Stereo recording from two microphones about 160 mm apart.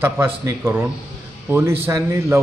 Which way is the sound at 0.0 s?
15° right (ahead or behind).